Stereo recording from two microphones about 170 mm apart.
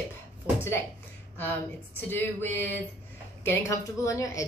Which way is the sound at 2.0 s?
10° left (ahead or behind).